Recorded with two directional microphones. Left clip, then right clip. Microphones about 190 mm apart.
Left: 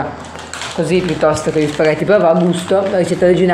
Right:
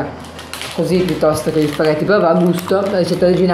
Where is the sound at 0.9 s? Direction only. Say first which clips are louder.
Left 1 dB; 15° left (ahead or behind).